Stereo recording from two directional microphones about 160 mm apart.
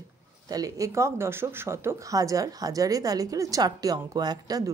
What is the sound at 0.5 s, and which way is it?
Speech, 20° right (ahead or behind).